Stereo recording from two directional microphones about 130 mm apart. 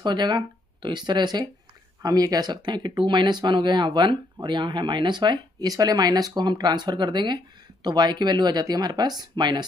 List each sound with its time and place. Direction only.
0.0 s speech: 35° right (ahead or behind)